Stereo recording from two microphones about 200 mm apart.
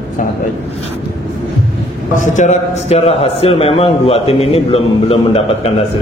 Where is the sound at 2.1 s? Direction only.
35° left (ahead or behind).